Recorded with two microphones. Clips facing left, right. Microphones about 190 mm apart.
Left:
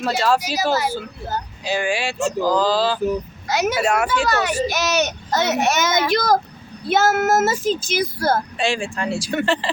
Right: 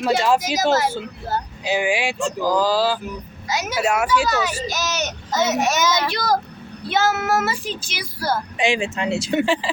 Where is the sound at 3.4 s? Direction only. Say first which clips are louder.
Left 2 dB; 60° left (ahead or behind).